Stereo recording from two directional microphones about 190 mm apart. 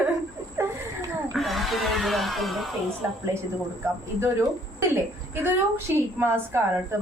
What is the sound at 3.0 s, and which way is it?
Speech, 10° right (ahead or behind).